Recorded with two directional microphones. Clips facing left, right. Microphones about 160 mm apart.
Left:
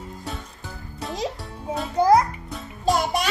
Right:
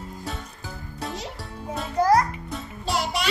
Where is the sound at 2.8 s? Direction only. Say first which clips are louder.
Left 5 dB; 50° left (ahead or behind).